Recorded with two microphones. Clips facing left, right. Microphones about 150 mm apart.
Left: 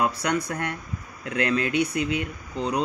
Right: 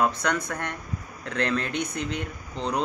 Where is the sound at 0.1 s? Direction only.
40° left (ahead or behind).